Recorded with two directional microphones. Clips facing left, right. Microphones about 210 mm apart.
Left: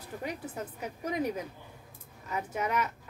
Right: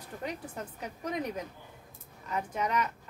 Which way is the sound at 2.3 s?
5° left (ahead or behind).